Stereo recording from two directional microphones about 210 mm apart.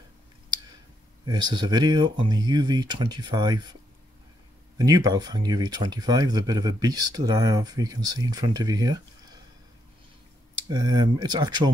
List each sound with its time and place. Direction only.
1.2 s speech: 20° right (ahead or behind)
4.7 s speech: 20° right (ahead or behind)
10.7 s speech: 20° right (ahead or behind)